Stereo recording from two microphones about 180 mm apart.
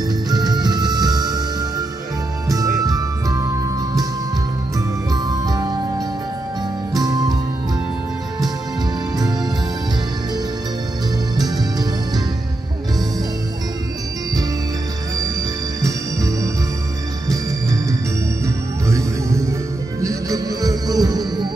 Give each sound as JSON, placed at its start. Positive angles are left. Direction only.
{"t": 0.3, "sound": "music", "side_deg": -20}
{"t": 5.1, "sound": "music", "side_deg": -20}
{"t": 6.9, "sound": "music", "side_deg": -20}
{"t": 11.3, "sound": "music", "side_deg": -20}
{"t": 15.8, "sound": "music", "side_deg": -20}
{"t": 18.9, "sound": "music", "side_deg": -15}